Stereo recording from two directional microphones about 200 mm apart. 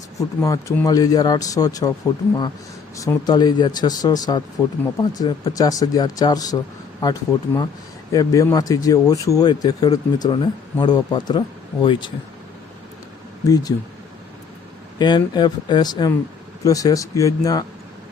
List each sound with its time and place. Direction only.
0.2 s a man's voice: 15° left (ahead or behind)
13.5 s speech: 20° left (ahead or behind)
14.9 s a man's voice: 20° left (ahead or behind)